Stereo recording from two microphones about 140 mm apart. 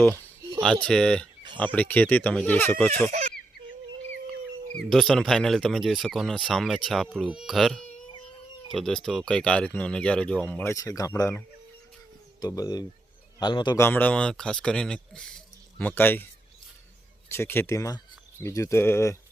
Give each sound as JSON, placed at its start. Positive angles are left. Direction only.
{"t": 0.1, "sound": "a sound", "side_deg": -20}
{"t": 0.6, "sound": "speech", "side_deg": 5}
{"t": 3.1, "sound": "speech", "side_deg": -55}
{"t": 4.8, "sound": "a man's voice", "side_deg": 0}
{"t": 13.7, "sound": "speech", "side_deg": 15}
{"t": 17.2, "sound": "speech", "side_deg": 15}